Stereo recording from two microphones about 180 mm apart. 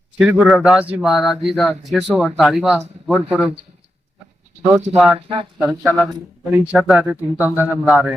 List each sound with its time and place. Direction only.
0.2 s speech: 5° right (ahead or behind)
4.9 s speech: centre (ahead or behind)
5.3 s speech: 30° right (ahead or behind)
5.8 s speech: 5° right (ahead or behind)